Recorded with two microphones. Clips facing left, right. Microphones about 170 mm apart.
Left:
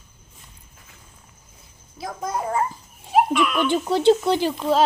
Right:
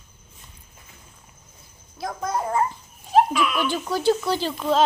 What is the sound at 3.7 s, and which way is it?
Speech, 25° left (ahead or behind).